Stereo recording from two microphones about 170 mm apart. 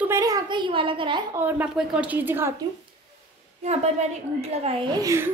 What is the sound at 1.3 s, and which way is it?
A woman's voice, 10° right (ahead or behind).